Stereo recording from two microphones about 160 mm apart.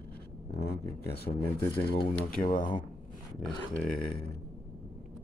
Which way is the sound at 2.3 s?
55° left (ahead or behind).